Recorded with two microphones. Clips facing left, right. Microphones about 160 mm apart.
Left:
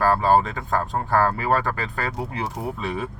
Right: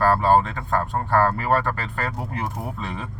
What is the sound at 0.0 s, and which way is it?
Speech, 5° left (ahead or behind).